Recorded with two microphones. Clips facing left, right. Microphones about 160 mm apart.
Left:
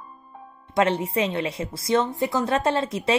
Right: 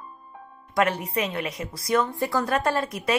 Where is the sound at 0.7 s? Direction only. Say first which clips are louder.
Left 2 dB; 25° left (ahead or behind).